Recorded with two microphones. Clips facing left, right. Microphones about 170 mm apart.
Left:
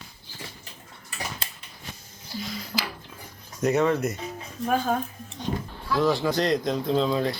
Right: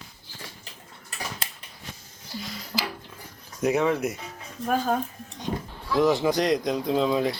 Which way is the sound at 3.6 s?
10° right (ahead or behind).